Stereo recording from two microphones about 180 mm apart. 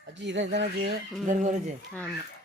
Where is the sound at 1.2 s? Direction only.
40° right (ahead or behind).